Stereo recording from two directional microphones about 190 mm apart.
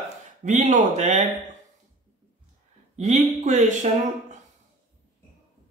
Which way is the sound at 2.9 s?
35° right (ahead or behind).